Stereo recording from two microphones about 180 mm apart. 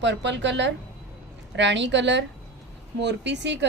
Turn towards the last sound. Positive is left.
turn(degrees=-75)  # may be behind; listen again after turning